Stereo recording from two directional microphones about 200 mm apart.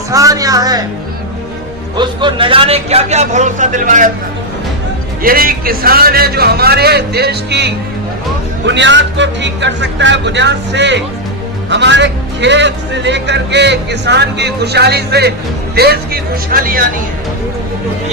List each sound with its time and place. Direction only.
0.1 s speech: 15° right (ahead or behind)
2.0 s a man's voice: 25° right (ahead or behind)
5.2 s a man's voice: 45° right (ahead or behind)